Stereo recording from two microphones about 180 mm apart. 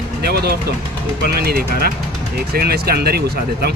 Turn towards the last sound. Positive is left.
turn(degrees=-60)  # may be behind; listen again after turning